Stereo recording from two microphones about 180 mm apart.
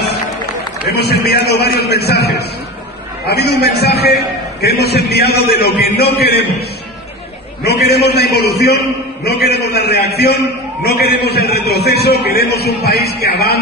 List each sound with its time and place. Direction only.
0.8 s a man's voice: 60° left (ahead or behind)
7.6 s a man's voice: 65° left (ahead or behind)